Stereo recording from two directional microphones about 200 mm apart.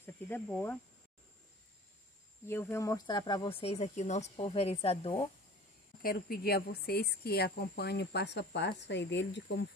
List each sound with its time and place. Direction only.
0.0 s speech: 10° left (ahead or behind)
2.4 s speech: 10° left (ahead or behind); by 5.2 s 30° left (ahead or behind)
6.0 s speech: 50° left (ahead or behind); by 9.7 s 65° left (ahead or behind)